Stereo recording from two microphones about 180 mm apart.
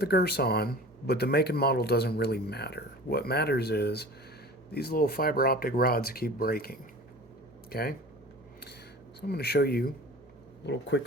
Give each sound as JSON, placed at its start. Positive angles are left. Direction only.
{"t": 0.0, "sound": "speech", "side_deg": 60}
{"t": 9.2, "sound": "speech", "side_deg": 60}
{"t": 10.7, "sound": "speech", "side_deg": 75}